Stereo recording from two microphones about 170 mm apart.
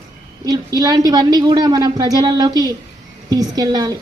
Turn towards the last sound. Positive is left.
turn(degrees=-20)  # may be behind; listen again after turning